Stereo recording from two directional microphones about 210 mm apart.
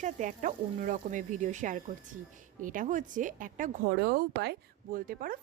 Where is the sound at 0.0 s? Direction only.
35° right (ahead or behind).